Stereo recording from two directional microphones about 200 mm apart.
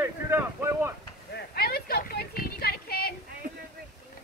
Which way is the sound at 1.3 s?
50° left (ahead or behind).